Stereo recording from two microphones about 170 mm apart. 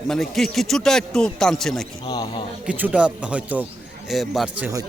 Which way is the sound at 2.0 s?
25° left (ahead or behind).